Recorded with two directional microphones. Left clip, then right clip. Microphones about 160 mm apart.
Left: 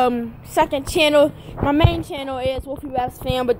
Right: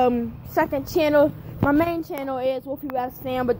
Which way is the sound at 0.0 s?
5° left (ahead or behind).